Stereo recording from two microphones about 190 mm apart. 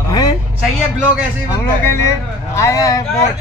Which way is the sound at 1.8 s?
15° left (ahead or behind).